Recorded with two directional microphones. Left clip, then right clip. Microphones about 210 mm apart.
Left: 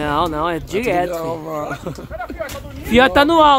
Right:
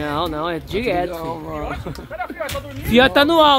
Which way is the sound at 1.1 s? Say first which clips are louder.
Left 4 dB; 55° left (ahead or behind).